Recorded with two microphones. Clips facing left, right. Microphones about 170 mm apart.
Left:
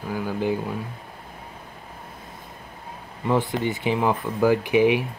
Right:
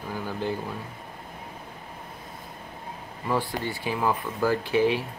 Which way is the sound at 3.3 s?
20° left (ahead or behind).